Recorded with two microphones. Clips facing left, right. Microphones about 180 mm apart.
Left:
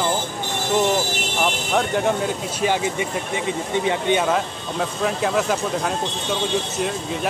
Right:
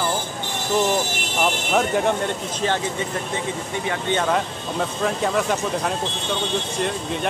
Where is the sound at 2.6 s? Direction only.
10° left (ahead or behind).